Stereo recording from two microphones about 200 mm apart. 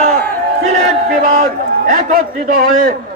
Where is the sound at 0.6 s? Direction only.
40° right (ahead or behind).